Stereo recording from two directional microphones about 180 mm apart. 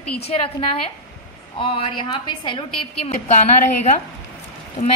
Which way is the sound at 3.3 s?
40° left (ahead or behind).